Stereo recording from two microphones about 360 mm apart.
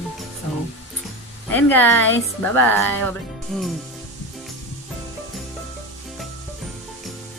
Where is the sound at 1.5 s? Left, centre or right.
Centre.